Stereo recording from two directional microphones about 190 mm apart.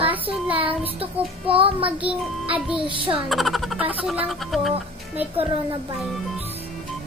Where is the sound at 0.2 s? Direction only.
30° right (ahead or behind).